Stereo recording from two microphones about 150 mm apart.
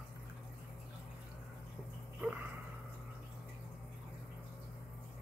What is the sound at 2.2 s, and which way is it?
Speech, 10° right (ahead or behind).